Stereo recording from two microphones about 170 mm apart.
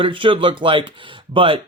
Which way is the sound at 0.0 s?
30° right (ahead or behind).